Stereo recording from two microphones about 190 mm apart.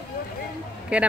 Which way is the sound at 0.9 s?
5° right (ahead or behind).